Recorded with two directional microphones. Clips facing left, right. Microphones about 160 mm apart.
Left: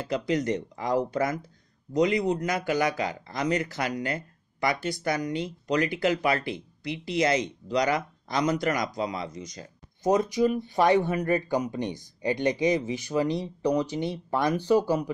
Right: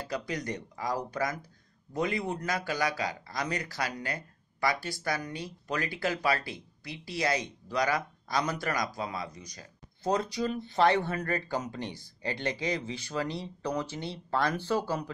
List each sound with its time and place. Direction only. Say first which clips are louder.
0.1 s speech: left 9 dB; 20° left (ahead or behind)